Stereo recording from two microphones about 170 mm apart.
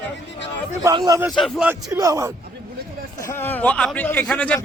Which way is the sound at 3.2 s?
15° left (ahead or behind).